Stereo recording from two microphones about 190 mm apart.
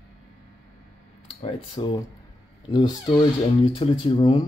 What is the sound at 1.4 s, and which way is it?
Speech, 30° left (ahead or behind).